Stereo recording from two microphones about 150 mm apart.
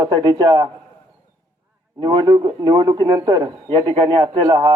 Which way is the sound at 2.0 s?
30° right (ahead or behind).